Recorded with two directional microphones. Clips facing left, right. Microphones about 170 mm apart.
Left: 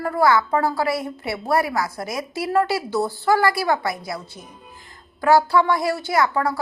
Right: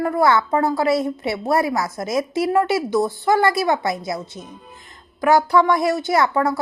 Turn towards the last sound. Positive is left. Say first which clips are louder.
# right 2 dB
turn(degrees=-25)  # may be behind; listen again after turning